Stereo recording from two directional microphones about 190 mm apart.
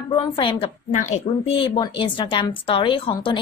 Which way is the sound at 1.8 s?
25° left (ahead or behind).